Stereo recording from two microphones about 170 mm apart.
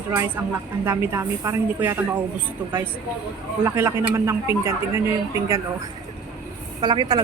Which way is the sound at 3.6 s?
15° right (ahead or behind).